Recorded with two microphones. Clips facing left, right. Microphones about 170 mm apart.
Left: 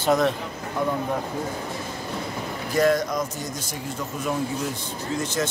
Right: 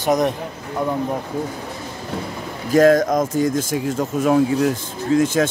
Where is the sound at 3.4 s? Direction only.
90° right.